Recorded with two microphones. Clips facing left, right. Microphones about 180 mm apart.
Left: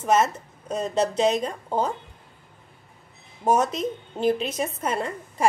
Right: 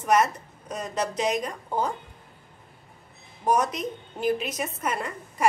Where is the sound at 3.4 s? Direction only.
25° left (ahead or behind).